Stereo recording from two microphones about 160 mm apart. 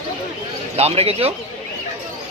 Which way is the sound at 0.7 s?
40° right (ahead or behind).